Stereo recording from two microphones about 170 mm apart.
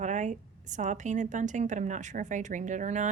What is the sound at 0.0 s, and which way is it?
A woman's voice, 45° right (ahead or behind).